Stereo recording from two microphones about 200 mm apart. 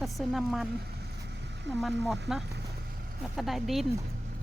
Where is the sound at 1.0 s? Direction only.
60° right (ahead or behind).